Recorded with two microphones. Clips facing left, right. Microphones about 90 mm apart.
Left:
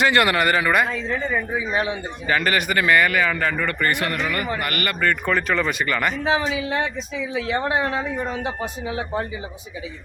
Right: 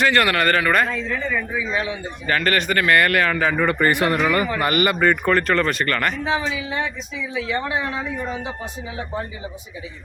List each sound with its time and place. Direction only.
0.0 s a man's voice: 20° left (ahead or behind)
1.7 s a woman's voice: 45° left (ahead or behind)
2.2 s speech: 15° left (ahead or behind)
3.0 s speech: centre (ahead or behind)
3.6 s speech: 20° right (ahead or behind)
5.2 s speech: centre (ahead or behind)
6.2 s a man's voice: 65° left (ahead or behind)
7.3 s a woman's voice: 50° left (ahead or behind)